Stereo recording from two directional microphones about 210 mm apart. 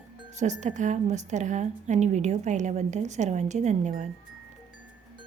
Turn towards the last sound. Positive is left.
turn(degrees=-35)  # may be behind; listen again after turning